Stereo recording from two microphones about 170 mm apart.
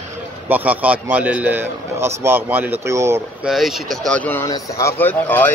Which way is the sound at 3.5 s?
Centre (ahead or behind).